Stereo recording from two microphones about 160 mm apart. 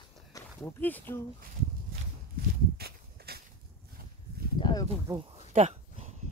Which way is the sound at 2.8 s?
75° right (ahead or behind).